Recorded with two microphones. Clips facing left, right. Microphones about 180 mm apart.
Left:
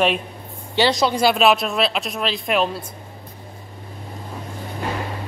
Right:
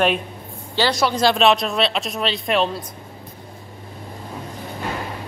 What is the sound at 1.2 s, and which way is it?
Speech, 5° left (ahead or behind).